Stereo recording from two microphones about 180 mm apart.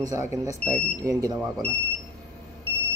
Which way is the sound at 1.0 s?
20° right (ahead or behind).